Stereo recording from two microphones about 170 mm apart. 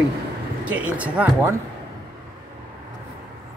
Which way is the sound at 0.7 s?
10° right (ahead or behind).